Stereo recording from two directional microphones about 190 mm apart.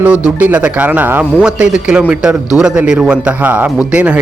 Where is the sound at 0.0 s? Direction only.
5° right (ahead or behind).